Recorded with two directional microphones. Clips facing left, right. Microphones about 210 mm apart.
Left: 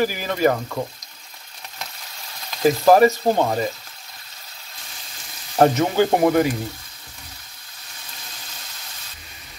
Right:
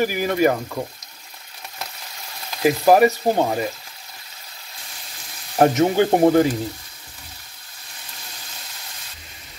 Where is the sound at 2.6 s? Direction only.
10° right (ahead or behind).